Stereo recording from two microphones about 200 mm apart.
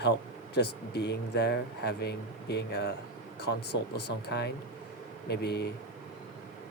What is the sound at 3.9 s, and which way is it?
A man's voice, 55° left (ahead or behind).